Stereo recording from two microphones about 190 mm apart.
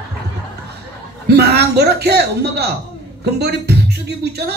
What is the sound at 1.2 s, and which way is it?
Speech, 60° right (ahead or behind).